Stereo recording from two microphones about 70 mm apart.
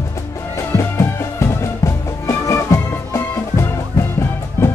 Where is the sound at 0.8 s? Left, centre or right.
Left.